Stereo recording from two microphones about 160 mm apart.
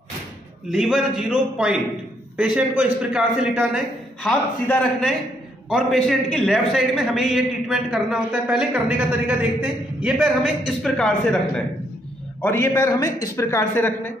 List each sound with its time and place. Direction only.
0.7 s a man's voice: 5° right (ahead or behind)
4.2 s a man's voice: 5° left (ahead or behind)
12.4 s a man's voice: 15° left (ahead or behind)